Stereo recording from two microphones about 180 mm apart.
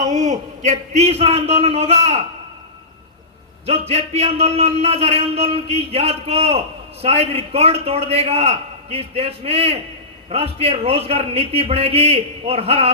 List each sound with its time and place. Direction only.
0.0 s a man's voice: 40° right (ahead or behind)
3.7 s a man's voice: 35° right (ahead or behind)